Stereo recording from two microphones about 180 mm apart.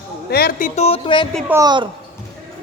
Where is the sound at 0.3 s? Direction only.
60° left (ahead or behind).